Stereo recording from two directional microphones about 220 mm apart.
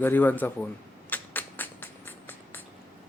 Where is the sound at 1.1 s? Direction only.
10° left (ahead or behind).